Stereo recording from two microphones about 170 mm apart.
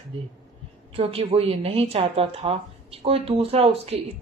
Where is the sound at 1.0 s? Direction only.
35° right (ahead or behind).